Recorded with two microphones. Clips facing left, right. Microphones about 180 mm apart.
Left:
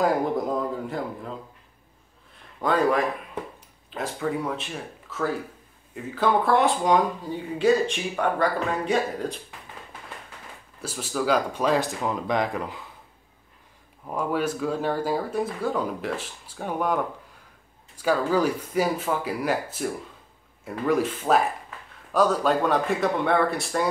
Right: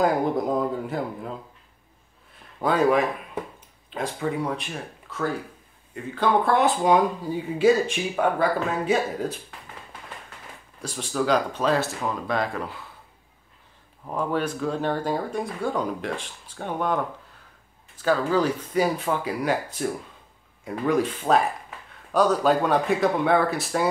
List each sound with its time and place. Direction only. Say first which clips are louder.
0.0 s speech: right 1 dB; centre (ahead or behind)
2.6 s speech: right 2 dB; 5° right (ahead or behind)
10.8 s speech: right 1 dB; 5° left (ahead or behind)
14.0 s speech: even; 10° left (ahead or behind)